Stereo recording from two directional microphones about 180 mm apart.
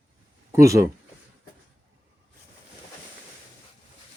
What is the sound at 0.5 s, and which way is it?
Speech, 15° right (ahead or behind).